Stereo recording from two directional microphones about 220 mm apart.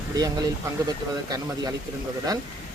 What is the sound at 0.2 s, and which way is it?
Speech, 15° right (ahead or behind).